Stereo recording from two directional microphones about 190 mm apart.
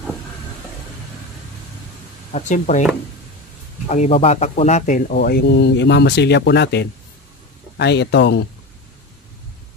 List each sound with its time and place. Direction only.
2.3 s speech: 40° left (ahead or behind)
3.9 s speech: 35° left (ahead or behind)
5.1 s speech: 60° left (ahead or behind)